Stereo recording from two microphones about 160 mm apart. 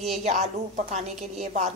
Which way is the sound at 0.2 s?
45° right (ahead or behind).